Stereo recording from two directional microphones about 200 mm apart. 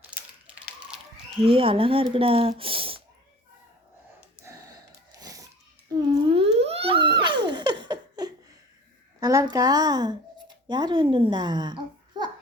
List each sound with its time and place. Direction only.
0.2 s a sound: 5° right (ahead or behind)
1.5 s speech: 30° right (ahead or behind)
4.4 s gasp: 10° right (ahead or behind)
5.2 s a sound: 15° right (ahead or behind)
6.2 s theremin: 30° right (ahead or behind)
9.2 s speech: 15° right (ahead or behind)